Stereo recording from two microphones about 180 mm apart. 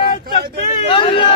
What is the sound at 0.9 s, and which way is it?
Speech, 30° left (ahead or behind).